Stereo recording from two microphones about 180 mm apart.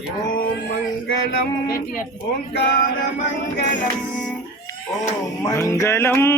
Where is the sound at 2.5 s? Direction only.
65° left (ahead or behind).